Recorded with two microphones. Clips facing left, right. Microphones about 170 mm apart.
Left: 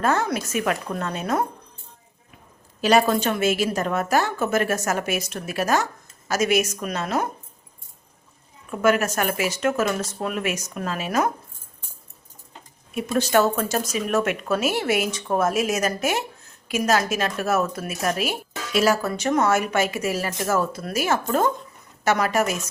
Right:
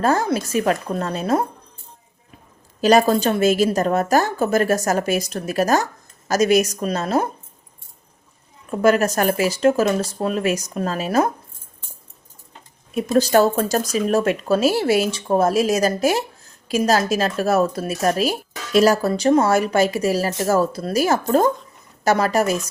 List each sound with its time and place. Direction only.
0.0 s speech: 35° right (ahead or behind)
2.8 s speech: 35° right (ahead or behind)
8.7 s speech: 35° right (ahead or behind)
12.9 s speech: 35° right (ahead or behind)